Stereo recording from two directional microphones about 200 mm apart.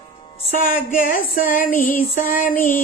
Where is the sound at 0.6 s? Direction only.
45° left (ahead or behind).